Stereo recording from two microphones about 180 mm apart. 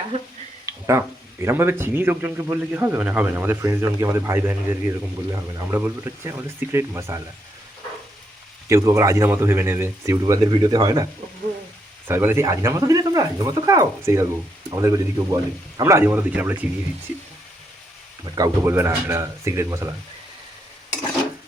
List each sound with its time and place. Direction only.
0.6 s speech: 15° right (ahead or behind)
8.7 s speech: 15° right (ahead or behind)
18.3 s speech: 15° right (ahead or behind)